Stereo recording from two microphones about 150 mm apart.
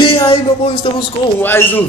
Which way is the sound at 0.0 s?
35° left (ahead or behind).